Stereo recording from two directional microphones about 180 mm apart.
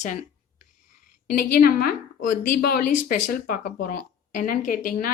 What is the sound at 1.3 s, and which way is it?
A woman's voice, 55° left (ahead or behind).